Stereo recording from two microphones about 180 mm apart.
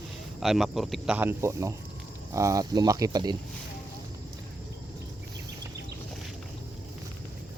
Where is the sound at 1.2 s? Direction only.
15° right (ahead or behind).